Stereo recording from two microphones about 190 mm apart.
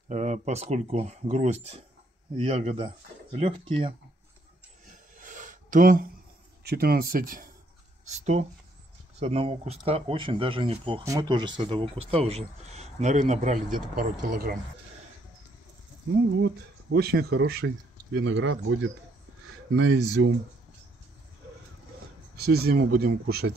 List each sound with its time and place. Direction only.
0.1 s speech: 40° right (ahead or behind)
5.1 s a sound: 45° right (ahead or behind)
6.6 s speech: 55° right (ahead or behind)
8.1 s speech: 35° right (ahead or behind)
14.3 s speech: 55° right (ahead or behind)
16.3 s speech: 60° right (ahead or behind); by 20.2 s 90° right
22.4 s speech: 60° right (ahead or behind)